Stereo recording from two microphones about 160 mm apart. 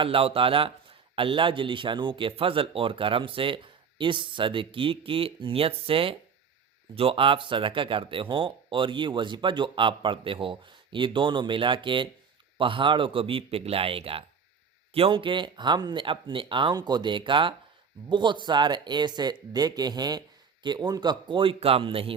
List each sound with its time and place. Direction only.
0.0 s a man's voice: 35° right (ahead or behind)